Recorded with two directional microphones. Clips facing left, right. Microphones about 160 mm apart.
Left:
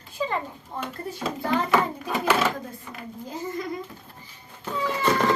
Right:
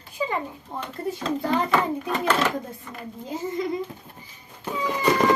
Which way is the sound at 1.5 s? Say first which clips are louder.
Even; 5° left (ahead or behind).